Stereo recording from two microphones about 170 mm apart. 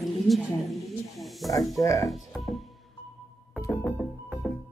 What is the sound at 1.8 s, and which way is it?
Speech, 20° left (ahead or behind).